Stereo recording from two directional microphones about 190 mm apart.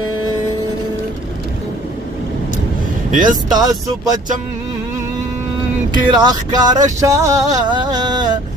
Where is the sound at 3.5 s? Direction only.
20° right (ahead or behind).